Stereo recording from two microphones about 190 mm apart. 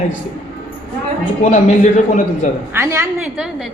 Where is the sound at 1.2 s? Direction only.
40° left (ahead or behind).